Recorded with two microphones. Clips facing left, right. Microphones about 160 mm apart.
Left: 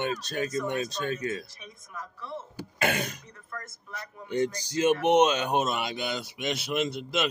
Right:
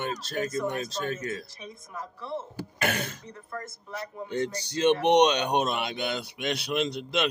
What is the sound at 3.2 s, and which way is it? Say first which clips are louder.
Speech: right 4 dB; 30° right (ahead or behind).